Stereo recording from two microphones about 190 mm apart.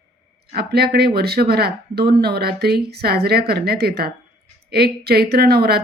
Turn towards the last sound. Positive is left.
turn(degrees=-55)  # may be behind; listen again after turning